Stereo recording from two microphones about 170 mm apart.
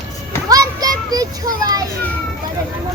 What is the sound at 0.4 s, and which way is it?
Children playing, 20° right (ahead or behind).